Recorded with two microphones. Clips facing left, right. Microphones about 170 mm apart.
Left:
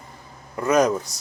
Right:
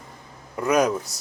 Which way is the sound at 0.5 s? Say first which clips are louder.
Left 2 dB; 10° right (ahead or behind).